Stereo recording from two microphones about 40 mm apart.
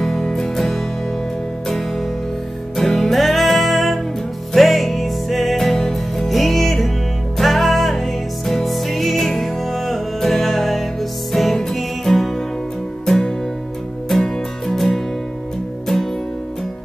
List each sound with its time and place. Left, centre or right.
0.0 s music: centre